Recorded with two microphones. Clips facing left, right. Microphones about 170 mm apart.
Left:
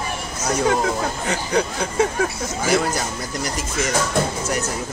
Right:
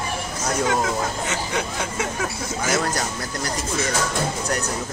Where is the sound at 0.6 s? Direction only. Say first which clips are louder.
Left 3 dB; 35° left (ahead or behind).